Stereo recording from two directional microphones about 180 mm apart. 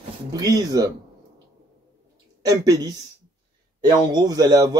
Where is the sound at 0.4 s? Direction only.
20° right (ahead or behind).